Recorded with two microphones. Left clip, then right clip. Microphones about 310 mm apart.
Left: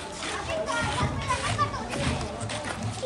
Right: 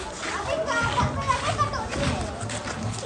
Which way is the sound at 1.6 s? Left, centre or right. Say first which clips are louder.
Right 2 dB; centre.